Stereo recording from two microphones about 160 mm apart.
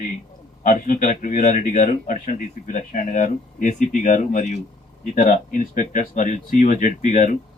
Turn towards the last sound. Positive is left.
turn(degrees=50)  # may be behind; listen again after turning